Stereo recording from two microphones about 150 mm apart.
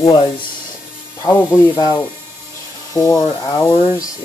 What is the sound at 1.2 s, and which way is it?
Speech, 20° left (ahead or behind).